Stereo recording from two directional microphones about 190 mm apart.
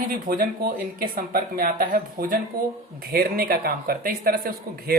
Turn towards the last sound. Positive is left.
turn(degrees=-50)  # may be behind; listen again after turning